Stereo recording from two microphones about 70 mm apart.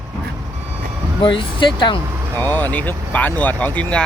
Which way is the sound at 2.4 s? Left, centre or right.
Left.